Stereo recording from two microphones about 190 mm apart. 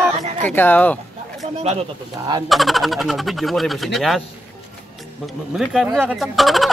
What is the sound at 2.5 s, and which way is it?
Speech, centre (ahead or behind).